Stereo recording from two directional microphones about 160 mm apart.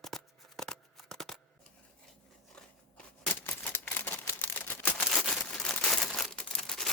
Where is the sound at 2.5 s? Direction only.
5° left (ahead or behind).